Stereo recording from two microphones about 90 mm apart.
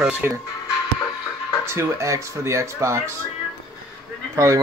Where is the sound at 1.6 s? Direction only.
30° right (ahead or behind).